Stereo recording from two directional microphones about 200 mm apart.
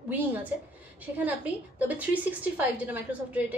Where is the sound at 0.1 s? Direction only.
10° right (ahead or behind).